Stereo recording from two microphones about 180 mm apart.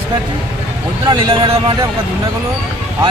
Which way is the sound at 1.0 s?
25° right (ahead or behind).